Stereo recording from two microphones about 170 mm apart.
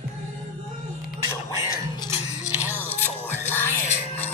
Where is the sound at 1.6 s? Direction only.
20° left (ahead or behind).